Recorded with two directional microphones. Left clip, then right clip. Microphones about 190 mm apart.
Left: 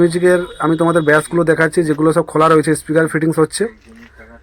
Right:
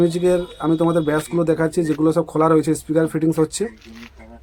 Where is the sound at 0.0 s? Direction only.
10° left (ahead or behind).